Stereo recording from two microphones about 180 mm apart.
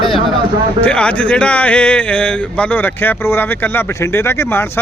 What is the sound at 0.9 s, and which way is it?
Speech, 5° left (ahead or behind).